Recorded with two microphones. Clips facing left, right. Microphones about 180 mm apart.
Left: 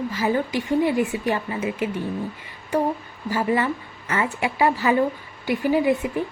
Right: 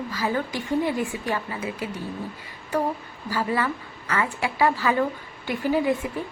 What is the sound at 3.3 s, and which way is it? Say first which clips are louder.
A woman's voice: left 3 dB; 20° left (ahead or behind).